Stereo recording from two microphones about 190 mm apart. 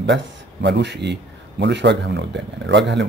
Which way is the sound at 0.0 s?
65° right (ahead or behind).